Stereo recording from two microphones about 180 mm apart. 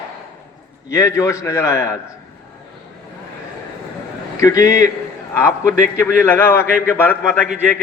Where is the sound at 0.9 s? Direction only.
15° left (ahead or behind).